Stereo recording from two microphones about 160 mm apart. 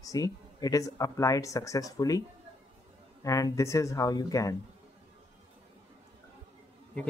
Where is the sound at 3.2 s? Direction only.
20° left (ahead or behind).